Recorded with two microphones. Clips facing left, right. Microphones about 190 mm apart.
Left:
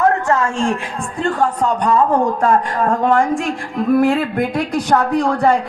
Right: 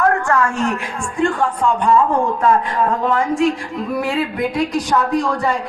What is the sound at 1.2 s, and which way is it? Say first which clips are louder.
A man's voice: even; 40° left (ahead or behind).